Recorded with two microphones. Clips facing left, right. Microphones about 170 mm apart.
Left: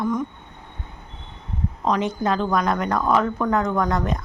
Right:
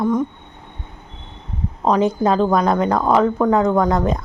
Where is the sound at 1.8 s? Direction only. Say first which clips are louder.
Right 6 dB; 35° right (ahead or behind).